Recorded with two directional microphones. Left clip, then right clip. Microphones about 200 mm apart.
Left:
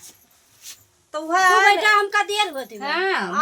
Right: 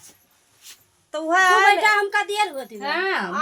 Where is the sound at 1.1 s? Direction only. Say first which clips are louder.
Even; 25° right (ahead or behind).